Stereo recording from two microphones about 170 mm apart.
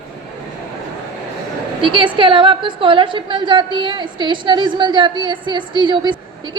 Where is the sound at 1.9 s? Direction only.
30° right (ahead or behind).